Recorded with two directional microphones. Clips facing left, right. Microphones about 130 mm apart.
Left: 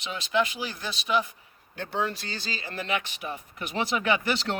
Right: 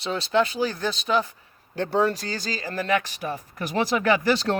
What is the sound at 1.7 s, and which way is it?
Speech, 40° right (ahead or behind).